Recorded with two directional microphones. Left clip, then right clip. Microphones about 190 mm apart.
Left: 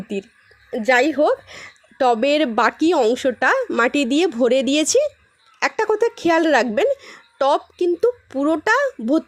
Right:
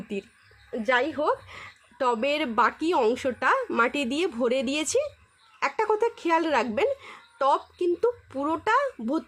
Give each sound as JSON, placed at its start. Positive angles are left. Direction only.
{"t": 0.1, "sound": "a woman's voice", "side_deg": 25}
{"t": 0.8, "sound": "a woman's voice", "side_deg": 40}